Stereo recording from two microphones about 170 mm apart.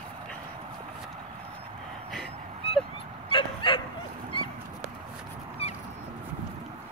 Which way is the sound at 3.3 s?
30° left (ahead or behind).